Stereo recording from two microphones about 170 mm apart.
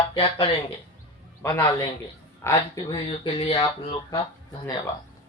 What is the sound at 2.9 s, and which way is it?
Speech, 30° left (ahead or behind).